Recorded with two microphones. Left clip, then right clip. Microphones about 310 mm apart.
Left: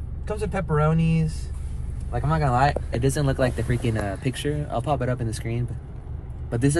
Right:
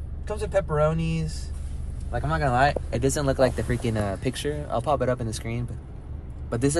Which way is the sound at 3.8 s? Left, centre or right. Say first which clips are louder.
Right 1 dB; right.